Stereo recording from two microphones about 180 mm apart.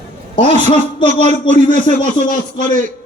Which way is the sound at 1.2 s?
40° right (ahead or behind).